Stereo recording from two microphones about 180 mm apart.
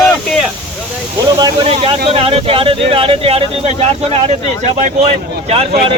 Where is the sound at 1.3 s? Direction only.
20° right (ahead or behind).